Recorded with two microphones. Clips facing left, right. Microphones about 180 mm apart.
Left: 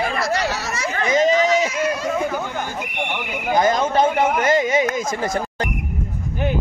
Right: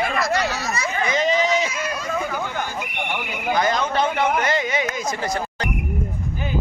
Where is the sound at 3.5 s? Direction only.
45° left (ahead or behind).